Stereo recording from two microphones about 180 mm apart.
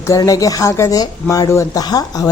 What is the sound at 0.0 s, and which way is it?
Speech, 20° left (ahead or behind).